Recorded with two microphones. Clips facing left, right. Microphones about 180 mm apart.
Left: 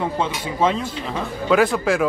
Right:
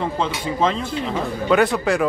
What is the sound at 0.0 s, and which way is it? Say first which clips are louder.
Speech: even; 5° left (ahead or behind).